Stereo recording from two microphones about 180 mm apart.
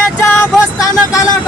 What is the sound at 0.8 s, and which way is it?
Speech, 20° left (ahead or behind).